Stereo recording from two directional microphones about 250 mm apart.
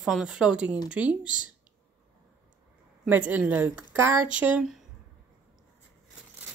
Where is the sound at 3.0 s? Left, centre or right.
Centre.